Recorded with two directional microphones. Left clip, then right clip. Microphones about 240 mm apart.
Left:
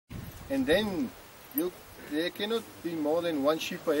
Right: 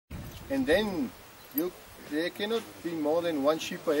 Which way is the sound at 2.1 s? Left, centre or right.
Centre.